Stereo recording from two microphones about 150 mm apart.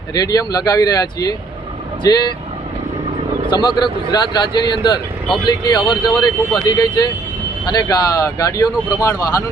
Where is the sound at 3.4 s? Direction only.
30° left (ahead or behind).